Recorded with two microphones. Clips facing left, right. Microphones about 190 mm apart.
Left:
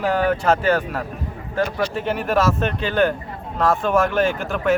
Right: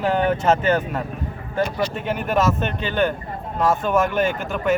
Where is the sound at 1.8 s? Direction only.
Centre (ahead or behind).